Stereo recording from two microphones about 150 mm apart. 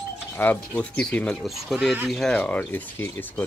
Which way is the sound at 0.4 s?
15° left (ahead or behind).